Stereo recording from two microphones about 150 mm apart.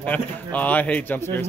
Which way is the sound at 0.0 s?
10° left (ahead or behind).